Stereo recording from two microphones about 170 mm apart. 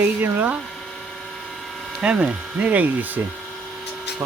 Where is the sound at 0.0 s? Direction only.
10° right (ahead or behind).